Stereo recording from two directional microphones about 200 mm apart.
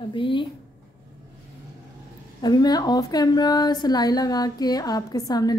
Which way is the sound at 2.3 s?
20° left (ahead or behind).